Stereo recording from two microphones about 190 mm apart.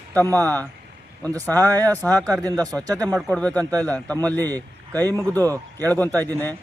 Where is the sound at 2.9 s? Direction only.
5° left (ahead or behind).